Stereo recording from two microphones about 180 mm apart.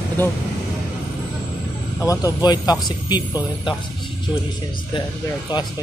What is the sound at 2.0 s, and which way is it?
Speech, 20° left (ahead or behind).